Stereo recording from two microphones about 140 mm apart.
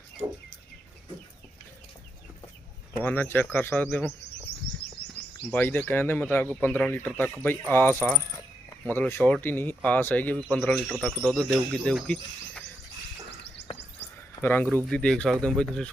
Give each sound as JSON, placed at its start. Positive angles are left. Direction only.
{"t": 3.0, "sound": "speech", "side_deg": 15}
{"t": 5.5, "sound": "speech", "side_deg": 15}
{"t": 14.4, "sound": "speech", "side_deg": 15}